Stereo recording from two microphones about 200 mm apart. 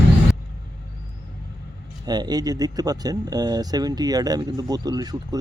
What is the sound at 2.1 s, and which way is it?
Speech, 20° right (ahead or behind).